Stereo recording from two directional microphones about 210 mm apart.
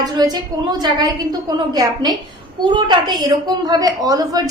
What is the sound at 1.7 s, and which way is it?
A woman's voice, 20° right (ahead or behind).